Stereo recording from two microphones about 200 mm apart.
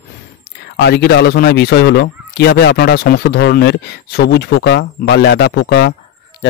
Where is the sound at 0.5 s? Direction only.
55° left (ahead or behind).